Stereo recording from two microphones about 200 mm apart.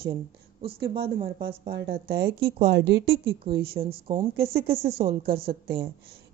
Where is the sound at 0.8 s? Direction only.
50° right (ahead or behind).